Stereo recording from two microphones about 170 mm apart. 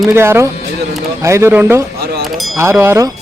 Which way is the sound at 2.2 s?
Centre (ahead or behind).